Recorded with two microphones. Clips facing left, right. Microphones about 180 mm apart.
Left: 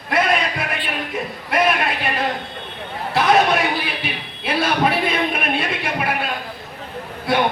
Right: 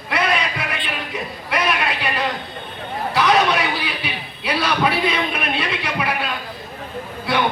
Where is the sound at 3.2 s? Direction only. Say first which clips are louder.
Left 2 dB; 50° left (ahead or behind).